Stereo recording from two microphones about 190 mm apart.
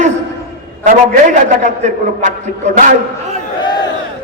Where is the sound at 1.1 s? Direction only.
40° right (ahead or behind).